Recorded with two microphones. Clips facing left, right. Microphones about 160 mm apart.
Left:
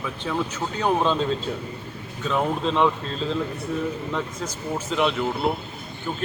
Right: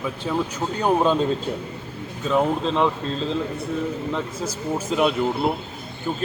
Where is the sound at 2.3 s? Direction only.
Centre (ahead or behind).